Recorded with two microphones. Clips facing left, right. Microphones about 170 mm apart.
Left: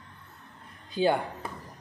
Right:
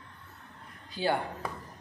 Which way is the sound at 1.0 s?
20° left (ahead or behind).